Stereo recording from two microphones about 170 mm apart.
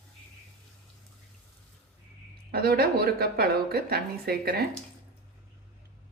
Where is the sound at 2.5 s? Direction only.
65° right (ahead or behind).